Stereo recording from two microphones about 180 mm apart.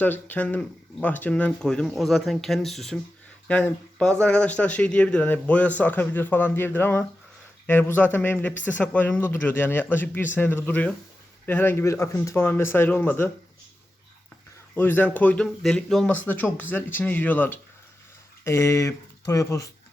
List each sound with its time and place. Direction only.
0.0 s speech: 10° left (ahead or behind)
14.8 s speech: 10° left (ahead or behind)